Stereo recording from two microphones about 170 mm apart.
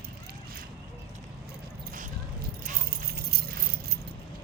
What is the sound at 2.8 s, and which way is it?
Keys jangling, 70° right (ahead or behind).